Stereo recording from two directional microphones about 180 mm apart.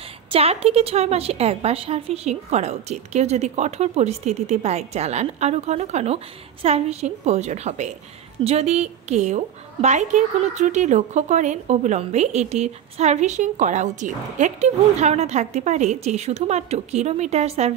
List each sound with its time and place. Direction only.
0.3 s a woman's voice: 35° right (ahead or behind)